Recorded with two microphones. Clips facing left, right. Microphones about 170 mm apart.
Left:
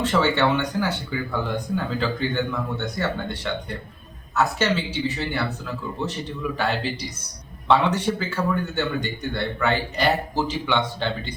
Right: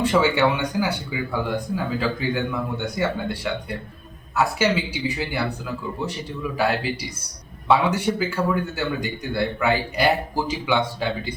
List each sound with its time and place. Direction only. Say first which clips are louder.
0.0 s speech: right 2 dB; 10° right (ahead or behind)